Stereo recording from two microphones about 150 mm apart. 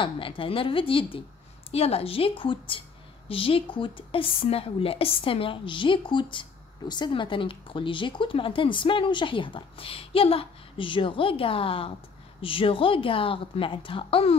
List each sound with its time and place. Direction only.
0.0 s speech: 35° left (ahead or behind)